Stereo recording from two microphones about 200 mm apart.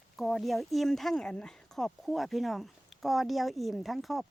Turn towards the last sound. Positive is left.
turn(degrees=0)  # may be behind; listen again after turning